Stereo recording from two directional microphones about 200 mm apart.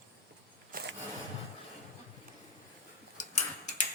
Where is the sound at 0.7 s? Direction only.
45° right (ahead or behind).